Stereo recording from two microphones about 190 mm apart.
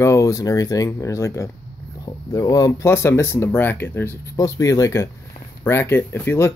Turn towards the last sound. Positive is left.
turn(degrees=10)  # may be behind; listen again after turning